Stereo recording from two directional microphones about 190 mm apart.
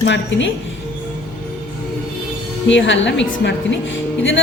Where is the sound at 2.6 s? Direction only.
75° left (ahead or behind).